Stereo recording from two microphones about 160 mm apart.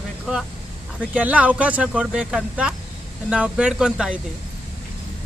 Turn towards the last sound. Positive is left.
turn(degrees=-5)  # may be behind; listen again after turning